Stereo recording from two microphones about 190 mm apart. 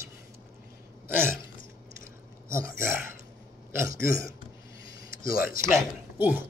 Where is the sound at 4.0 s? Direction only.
50° left (ahead or behind).